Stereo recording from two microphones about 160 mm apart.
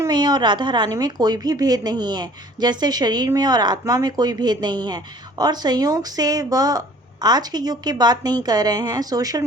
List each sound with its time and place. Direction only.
0.0 s a woman's voice: 25° right (ahead or behind)